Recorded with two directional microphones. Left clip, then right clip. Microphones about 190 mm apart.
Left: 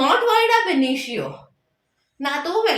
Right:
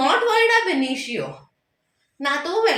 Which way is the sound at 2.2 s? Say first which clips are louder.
Right 1 dB; centre (ahead or behind).